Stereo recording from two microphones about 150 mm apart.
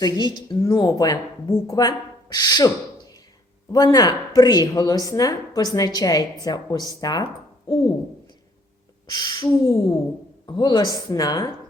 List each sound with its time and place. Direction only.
0.0 s speech: 30° left (ahead or behind)
0.5 s speech: 15° left (ahead or behind)
9.1 s speech: 30° left (ahead or behind)